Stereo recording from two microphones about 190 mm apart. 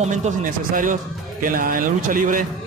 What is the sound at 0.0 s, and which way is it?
A man's voice, 40° right (ahead or behind).